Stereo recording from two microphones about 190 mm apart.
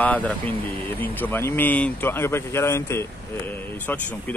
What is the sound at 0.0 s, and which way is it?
Speech, 10° left (ahead or behind).